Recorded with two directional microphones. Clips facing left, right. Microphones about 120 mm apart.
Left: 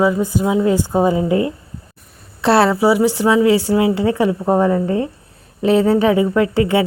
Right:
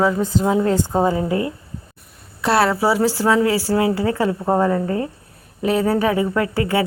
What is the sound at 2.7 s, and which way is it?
A woman's voice, 15° left (ahead or behind).